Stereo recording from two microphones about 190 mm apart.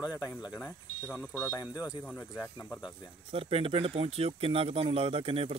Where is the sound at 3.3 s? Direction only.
30° right (ahead or behind).